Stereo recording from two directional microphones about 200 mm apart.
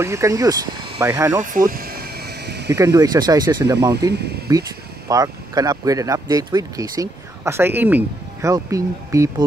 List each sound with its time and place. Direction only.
0.0 s speech: 15° right (ahead or behind)
1.4 s a sound: 40° right (ahead or behind)
2.7 s speech: 15° right (ahead or behind)
4.1 s speech: 55° right (ahead or behind)
4.5 s speech: 15° right (ahead or behind)